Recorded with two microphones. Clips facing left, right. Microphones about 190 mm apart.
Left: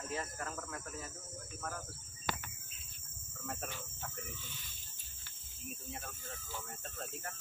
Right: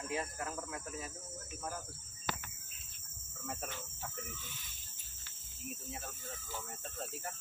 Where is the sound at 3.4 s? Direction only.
5° right (ahead or behind).